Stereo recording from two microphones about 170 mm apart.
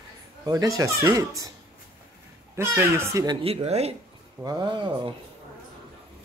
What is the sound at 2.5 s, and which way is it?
Speech, 15° right (ahead or behind).